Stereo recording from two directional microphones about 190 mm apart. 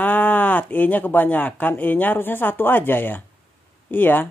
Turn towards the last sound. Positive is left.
turn(degrees=10)  # may be behind; listen again after turning